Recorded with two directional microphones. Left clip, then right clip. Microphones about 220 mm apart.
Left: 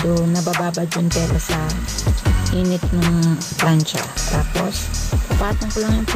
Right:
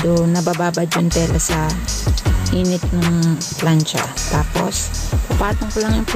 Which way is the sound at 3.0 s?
Centre (ahead or behind).